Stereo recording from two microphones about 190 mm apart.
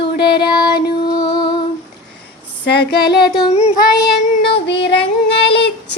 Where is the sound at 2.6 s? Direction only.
60° left (ahead or behind).